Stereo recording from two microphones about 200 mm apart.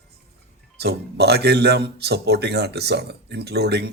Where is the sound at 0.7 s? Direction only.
55° right (ahead or behind).